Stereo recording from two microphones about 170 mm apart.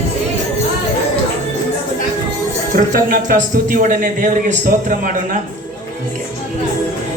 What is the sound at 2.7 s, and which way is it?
A man's voice, 55° right (ahead or behind).